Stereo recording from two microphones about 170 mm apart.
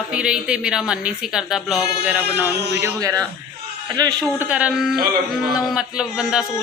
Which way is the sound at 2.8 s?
20° right (ahead or behind).